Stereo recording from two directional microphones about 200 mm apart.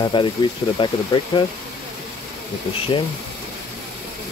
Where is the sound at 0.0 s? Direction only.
25° left (ahead or behind).